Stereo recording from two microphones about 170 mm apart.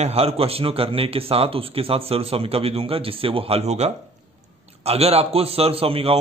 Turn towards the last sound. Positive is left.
turn(degrees=-35)  # may be behind; listen again after turning